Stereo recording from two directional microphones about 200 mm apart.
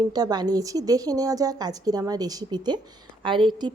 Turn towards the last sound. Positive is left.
turn(degrees=-25)  # may be behind; listen again after turning